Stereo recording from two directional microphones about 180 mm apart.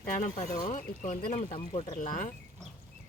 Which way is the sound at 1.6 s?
25° left (ahead or behind).